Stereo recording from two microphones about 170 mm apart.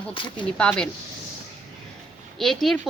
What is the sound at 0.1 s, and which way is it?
Speech, 30° left (ahead or behind).